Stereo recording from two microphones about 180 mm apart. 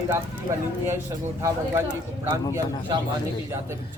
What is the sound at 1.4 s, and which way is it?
Speech, 15° right (ahead or behind).